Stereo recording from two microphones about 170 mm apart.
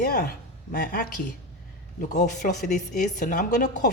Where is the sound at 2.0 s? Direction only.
50° left (ahead or behind).